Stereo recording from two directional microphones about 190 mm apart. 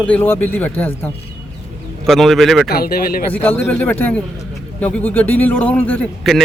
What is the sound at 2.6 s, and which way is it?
Speech, 50° left (ahead or behind).